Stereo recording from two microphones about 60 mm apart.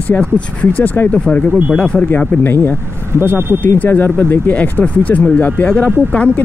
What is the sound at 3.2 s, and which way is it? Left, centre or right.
Speech, right.